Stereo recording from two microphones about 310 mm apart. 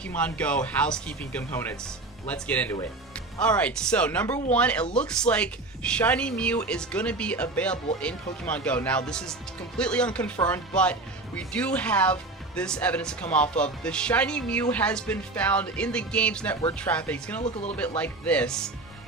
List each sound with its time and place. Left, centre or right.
0.0 s speech: centre
17.4 s speech: centre
17.7 s speech: centre